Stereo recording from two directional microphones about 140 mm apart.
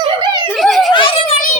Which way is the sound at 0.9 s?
40° left (ahead or behind).